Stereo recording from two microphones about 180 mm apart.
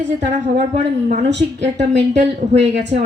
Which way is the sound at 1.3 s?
75° right (ahead or behind).